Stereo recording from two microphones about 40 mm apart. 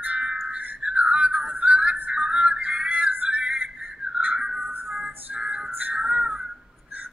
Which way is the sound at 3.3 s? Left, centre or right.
Right.